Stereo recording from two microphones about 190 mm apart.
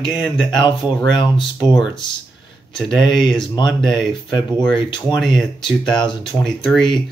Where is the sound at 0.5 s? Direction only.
25° left (ahead or behind).